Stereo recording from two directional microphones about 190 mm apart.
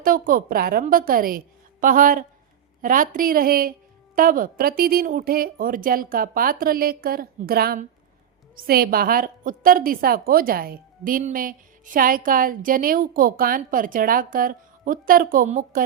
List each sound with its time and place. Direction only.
0.0 s a woman's voice: 45° right (ahead or behind)